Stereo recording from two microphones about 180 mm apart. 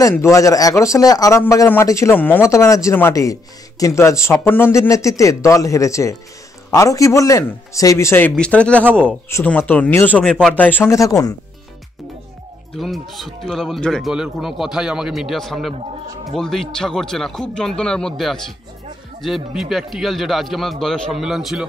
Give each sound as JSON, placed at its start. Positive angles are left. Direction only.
{"t": 0.0, "sound": "a man's voice", "side_deg": 15}
{"t": 12.7, "sound": "speech", "side_deg": 0}